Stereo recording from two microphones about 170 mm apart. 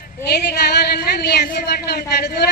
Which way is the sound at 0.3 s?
75° left (ahead or behind).